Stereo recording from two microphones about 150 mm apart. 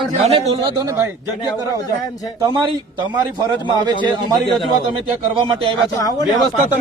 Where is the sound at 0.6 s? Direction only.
25° right (ahead or behind).